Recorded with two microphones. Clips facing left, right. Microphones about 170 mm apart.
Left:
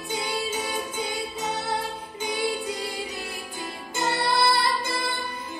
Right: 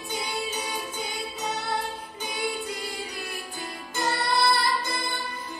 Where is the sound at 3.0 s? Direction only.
25° left (ahead or behind).